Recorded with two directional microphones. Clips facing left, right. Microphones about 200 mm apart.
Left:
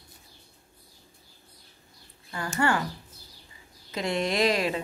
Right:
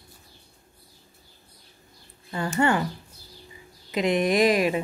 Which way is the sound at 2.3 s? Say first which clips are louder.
Right 4 dB; 25° right (ahead or behind).